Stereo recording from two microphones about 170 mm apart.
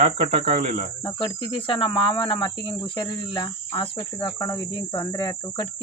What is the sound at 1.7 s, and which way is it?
Cricket, 30° left (ahead or behind).